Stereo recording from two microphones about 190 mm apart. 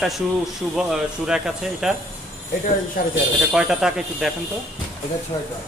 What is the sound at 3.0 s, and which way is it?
Speech, 50° left (ahead or behind).